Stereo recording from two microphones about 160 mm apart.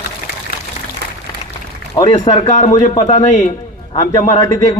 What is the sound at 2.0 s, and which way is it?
Speech, 25° left (ahead or behind).